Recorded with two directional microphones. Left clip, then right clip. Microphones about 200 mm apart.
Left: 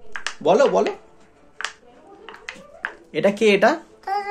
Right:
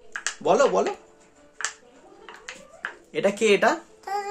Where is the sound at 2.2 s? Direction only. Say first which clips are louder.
Left 4 dB; 5° left (ahead or behind).